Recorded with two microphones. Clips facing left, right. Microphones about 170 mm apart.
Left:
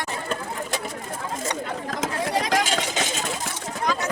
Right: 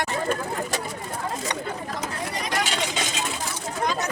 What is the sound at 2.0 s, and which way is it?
Vehicle, 90° left.